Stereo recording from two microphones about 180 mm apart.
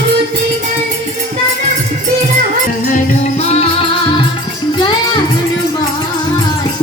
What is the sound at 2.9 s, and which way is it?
Music, 40° left (ahead or behind).